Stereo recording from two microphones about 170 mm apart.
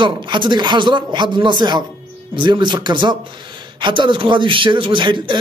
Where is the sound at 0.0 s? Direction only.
30° right (ahead or behind).